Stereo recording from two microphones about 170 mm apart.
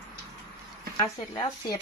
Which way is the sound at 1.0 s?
20° left (ahead or behind).